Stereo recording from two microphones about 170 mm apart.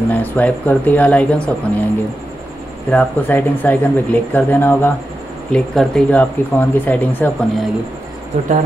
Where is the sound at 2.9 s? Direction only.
10° left (ahead or behind).